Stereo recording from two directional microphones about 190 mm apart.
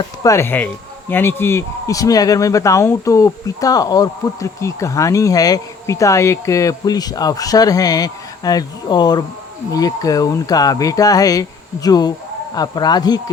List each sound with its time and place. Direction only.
0.2 s speech: 15° left (ahead or behind)